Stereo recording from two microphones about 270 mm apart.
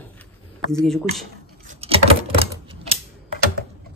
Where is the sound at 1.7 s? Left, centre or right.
Right.